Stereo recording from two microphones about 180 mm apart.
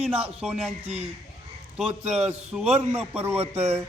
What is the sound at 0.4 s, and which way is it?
Speech, centre (ahead or behind).